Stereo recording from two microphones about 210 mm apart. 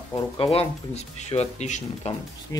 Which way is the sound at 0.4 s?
30° left (ahead or behind).